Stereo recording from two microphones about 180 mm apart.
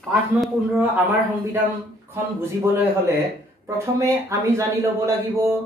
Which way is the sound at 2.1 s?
10° right (ahead or behind).